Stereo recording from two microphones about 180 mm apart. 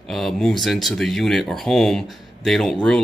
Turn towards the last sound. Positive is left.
turn(degrees=0)  # may be behind; listen again after turning